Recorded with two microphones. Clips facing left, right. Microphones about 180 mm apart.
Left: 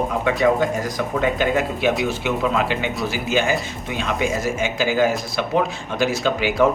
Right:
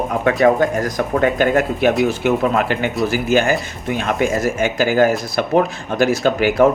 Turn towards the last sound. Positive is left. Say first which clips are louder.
# right 4 dB
turn(degrees=-50)  # may be behind; listen again after turning